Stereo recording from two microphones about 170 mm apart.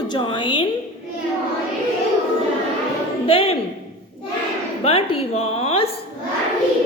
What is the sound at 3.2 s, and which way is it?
Speech, 35° left (ahead or behind).